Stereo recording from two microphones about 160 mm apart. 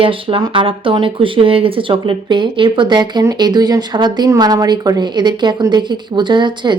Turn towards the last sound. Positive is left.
turn(degrees=-30)  # may be behind; listen again after turning